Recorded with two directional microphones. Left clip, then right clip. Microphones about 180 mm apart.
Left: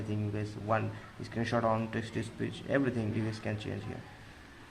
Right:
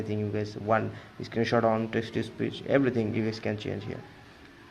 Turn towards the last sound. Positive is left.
turn(degrees=-25)  # may be behind; listen again after turning